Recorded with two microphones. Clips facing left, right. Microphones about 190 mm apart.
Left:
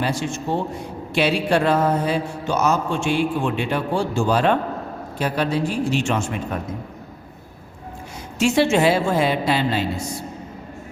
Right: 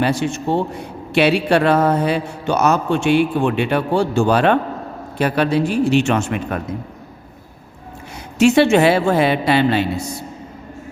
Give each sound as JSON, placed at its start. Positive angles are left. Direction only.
{"t": 0.0, "sound": "a man's voice", "side_deg": -65}
{"t": 8.4, "sound": "a man's voice", "side_deg": -65}